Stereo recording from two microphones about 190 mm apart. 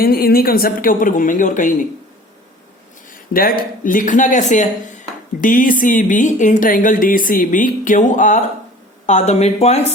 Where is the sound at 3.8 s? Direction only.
45° left (ahead or behind).